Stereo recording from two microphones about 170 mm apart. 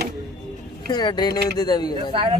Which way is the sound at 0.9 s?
25° left (ahead or behind).